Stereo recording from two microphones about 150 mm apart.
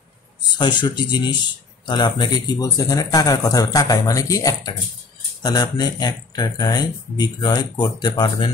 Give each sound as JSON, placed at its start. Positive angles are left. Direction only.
{"t": 0.6, "sound": "speech", "side_deg": 30}